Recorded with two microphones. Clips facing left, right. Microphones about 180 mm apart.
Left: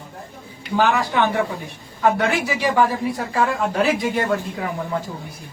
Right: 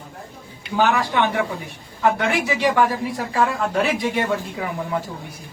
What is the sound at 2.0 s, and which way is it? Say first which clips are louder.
A man's voice: left 1 dB; centre (ahead or behind).